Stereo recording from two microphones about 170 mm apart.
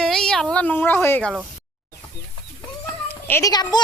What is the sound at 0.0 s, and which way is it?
Speech, centre (ahead or behind).